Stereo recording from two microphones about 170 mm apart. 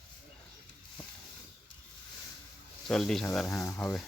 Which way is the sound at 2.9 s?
5° left (ahead or behind).